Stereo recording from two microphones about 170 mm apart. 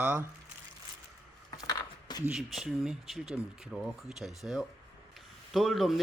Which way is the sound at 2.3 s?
5° right (ahead or behind).